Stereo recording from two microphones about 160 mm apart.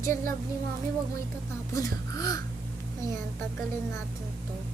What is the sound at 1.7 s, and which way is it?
Speech, 20° left (ahead or behind).